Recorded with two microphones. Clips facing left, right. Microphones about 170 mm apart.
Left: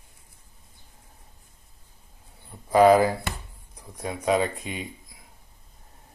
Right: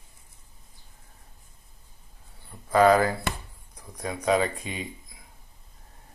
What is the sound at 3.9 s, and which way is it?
Speech, 5° left (ahead or behind).